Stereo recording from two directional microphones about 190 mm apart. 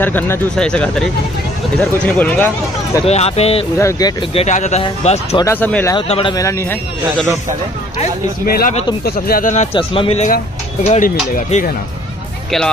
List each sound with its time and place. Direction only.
0.0 s speech: 10° left (ahead or behind)
3.1 s speech: 35° left (ahead or behind)
3.7 s speech: 15° left (ahead or behind)
4.3 s speech: 35° left (ahead or behind)
5.4 s speech: 10° left (ahead or behind)
5.9 s speech: 30° left (ahead or behind)
6.3 s speech: 15° left (ahead or behind)
8.5 s speech: 50° left (ahead or behind)
9.8 s speech: 30° left (ahead or behind); by 11.7 s 45° left (ahead or behind)